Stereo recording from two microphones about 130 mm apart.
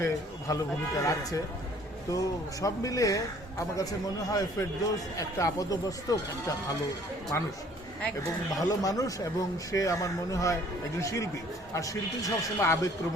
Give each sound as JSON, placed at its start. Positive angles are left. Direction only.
{"t": 0.0, "sound": "a man's voice", "side_deg": 25}
{"t": 4.3, "sound": "a man's voice", "side_deg": 25}
{"t": 7.3, "sound": "a man's voice", "side_deg": 20}
{"t": 8.5, "sound": "a man's voice", "side_deg": 25}